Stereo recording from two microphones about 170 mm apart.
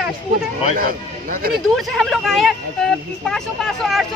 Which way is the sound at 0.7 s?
55° right (ahead or behind).